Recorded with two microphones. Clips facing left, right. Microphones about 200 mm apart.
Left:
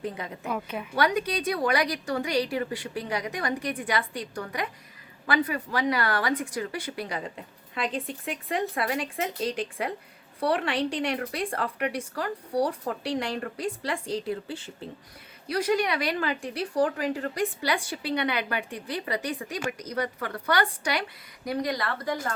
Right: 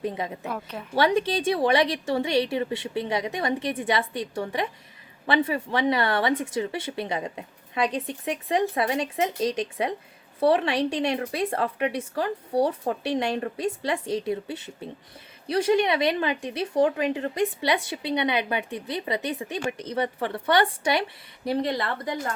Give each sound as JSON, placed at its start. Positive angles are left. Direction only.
{"t": 0.0, "sound": "speech", "side_deg": -20}
{"t": 0.4, "sound": "a woman's voice", "side_deg": 0}
{"t": 0.9, "sound": "speech", "side_deg": -25}